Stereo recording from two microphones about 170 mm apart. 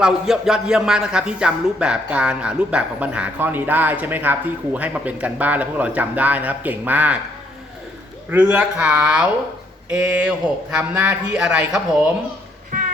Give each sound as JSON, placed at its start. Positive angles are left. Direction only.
{"t": 0.0, "sound": "a man's voice", "side_deg": -5}
{"t": 8.3, "sound": "a man's voice", "side_deg": -5}
{"t": 12.7, "sound": "music", "side_deg": -50}